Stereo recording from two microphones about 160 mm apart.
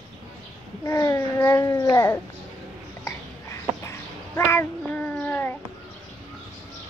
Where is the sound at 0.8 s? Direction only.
20° left (ahead or behind).